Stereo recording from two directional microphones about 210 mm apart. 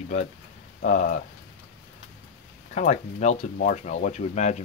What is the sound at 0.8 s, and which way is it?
Speech, 35° left (ahead or behind).